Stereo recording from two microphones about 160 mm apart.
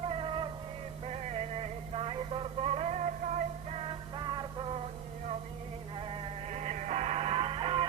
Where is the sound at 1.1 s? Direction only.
45° right (ahead or behind).